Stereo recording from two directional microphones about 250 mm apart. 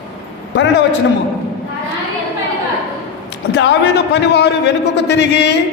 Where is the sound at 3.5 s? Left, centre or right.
Left.